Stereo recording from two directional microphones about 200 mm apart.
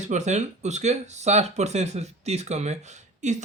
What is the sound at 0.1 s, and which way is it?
Speech, 35° right (ahead or behind).